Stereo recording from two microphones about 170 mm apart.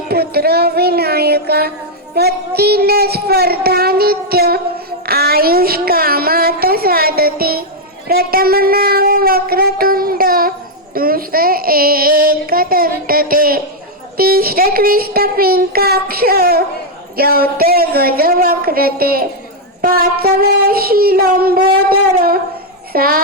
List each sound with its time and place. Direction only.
0.1 s a sound: 70° right (ahead or behind)
8.0 s a woman's voice: 60° right (ahead or behind)
10.9 s child singing: 60° right (ahead or behind)
22.9 s a woman's voice: 60° right (ahead or behind)